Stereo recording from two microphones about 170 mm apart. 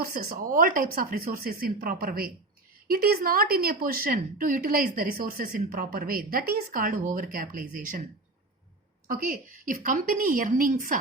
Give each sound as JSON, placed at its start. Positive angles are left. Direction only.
{"t": 0.0, "sound": "a woman's voice", "side_deg": -60}
{"t": 9.0, "sound": "a woman's voice", "side_deg": -55}